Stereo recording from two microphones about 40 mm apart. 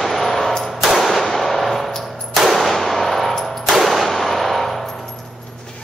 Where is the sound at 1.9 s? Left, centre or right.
Centre.